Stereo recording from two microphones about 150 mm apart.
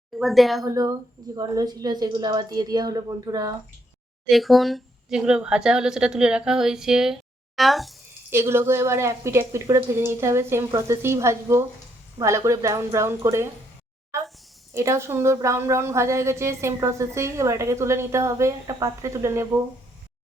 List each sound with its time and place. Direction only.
0.2 s speech: centre (ahead or behind)
0.6 s a woman's voice: 25° right (ahead or behind)
4.3 s speech: centre (ahead or behind)
8.3 s a woman's voice: 15° right (ahead or behind)
14.7 s a woman's voice: 20° right (ahead or behind)